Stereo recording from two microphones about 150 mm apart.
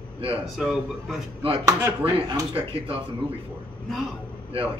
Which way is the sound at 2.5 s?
40° right (ahead or behind).